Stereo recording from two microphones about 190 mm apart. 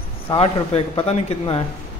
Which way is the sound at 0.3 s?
30° left (ahead or behind).